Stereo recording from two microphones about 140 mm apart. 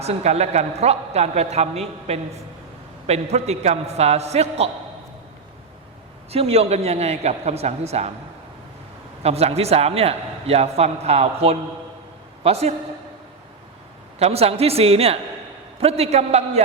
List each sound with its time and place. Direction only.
0.0 s a man's voice: 50° right (ahead or behind)
6.3 s a man's voice: 45° right (ahead or behind)
9.2 s a man's voice: 50° right (ahead or behind)
14.2 s a man's voice: 45° right (ahead or behind)